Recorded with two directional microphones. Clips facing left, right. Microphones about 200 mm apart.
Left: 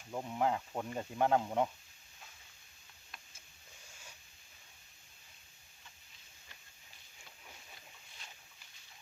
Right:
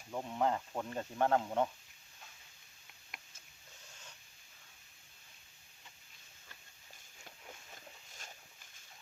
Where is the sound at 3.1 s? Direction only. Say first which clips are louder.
Right 1 dB; 20° right (ahead or behind).